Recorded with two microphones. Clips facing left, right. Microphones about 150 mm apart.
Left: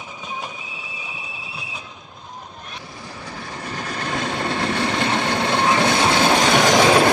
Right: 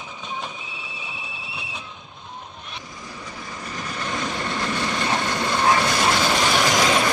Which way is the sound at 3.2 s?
70° left (ahead or behind).